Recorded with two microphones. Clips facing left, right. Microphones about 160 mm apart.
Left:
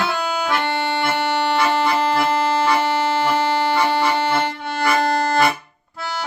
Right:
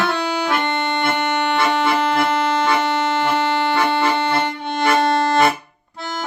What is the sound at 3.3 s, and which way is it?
Music, 5° left (ahead or behind).